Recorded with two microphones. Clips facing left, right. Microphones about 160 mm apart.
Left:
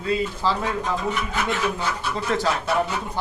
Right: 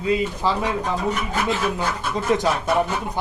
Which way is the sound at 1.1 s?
40° right (ahead or behind).